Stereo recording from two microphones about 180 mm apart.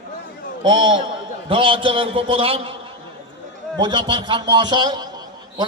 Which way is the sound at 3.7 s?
25° right (ahead or behind).